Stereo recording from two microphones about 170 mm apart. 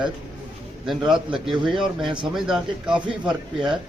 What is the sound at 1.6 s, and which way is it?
Speech, 25° right (ahead or behind).